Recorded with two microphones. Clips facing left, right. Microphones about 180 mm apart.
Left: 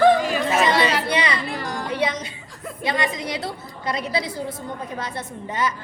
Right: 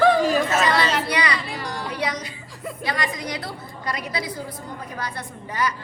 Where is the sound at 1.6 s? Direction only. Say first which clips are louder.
Left 2 dB; 50° left (ahead or behind).